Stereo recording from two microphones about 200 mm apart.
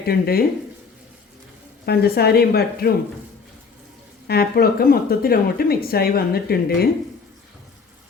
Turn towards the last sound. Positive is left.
turn(degrees=50)  # may be behind; listen again after turning